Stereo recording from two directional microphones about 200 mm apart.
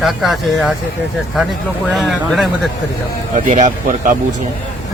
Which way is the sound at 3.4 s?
40° right (ahead or behind).